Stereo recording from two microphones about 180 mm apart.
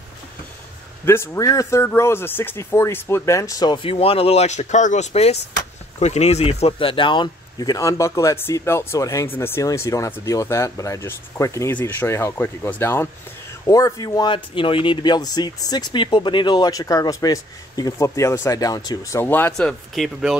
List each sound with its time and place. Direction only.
1.0 s speech: 15° left (ahead or behind)
19.2 s speech: 10° left (ahead or behind)